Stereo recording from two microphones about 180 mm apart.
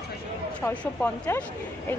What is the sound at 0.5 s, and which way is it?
Speech, 10° left (ahead or behind).